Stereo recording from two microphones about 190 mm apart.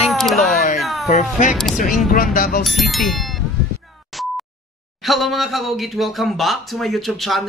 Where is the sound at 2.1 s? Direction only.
50° left (ahead or behind).